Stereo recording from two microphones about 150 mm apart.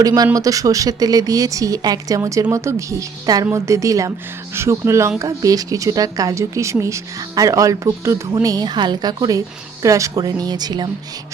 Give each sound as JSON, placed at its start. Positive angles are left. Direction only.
{"t": 0.0, "sound": "speech", "side_deg": -25}